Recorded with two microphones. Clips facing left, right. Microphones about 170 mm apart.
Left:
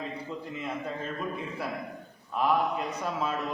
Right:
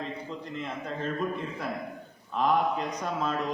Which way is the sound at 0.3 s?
5° left (ahead or behind).